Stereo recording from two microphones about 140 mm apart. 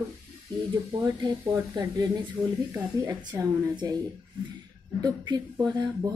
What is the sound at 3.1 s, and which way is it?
Speech, 30° right (ahead or behind).